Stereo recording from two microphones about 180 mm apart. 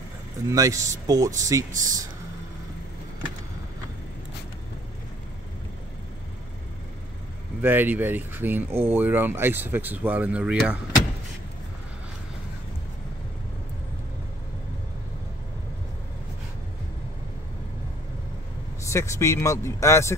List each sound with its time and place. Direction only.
0.5 s speech: 20° right (ahead or behind)
7.6 s speech: 10° right (ahead or behind)
18.9 s speech: 15° left (ahead or behind)